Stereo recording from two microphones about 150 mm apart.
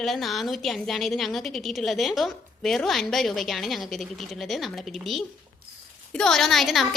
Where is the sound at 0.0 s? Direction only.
Centre (ahead or behind).